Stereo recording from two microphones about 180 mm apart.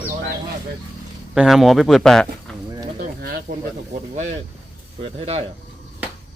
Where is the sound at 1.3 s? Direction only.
Centre (ahead or behind).